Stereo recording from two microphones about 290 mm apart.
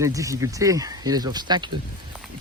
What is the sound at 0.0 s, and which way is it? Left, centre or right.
Speech, centre.